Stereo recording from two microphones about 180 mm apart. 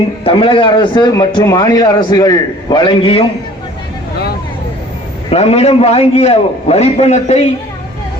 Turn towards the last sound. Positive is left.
turn(degrees=35)  # may be behind; listen again after turning